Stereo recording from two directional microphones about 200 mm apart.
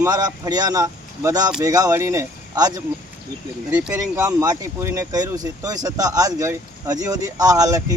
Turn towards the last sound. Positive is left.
turn(degrees=-15)  # may be behind; listen again after turning